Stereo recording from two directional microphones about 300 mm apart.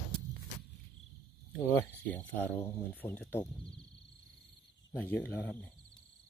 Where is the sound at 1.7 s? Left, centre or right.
Centre.